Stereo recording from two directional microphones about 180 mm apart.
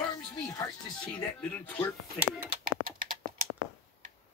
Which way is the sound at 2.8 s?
50° right (ahead or behind).